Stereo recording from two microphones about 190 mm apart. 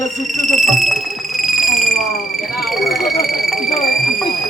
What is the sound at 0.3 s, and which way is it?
Alarm, centre (ahead or behind).